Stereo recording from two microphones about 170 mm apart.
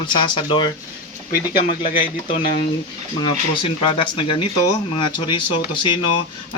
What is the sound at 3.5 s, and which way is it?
Speech, 30° left (ahead or behind).